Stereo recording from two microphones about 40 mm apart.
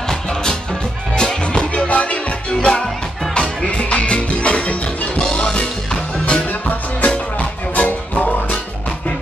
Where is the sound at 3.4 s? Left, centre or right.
Left.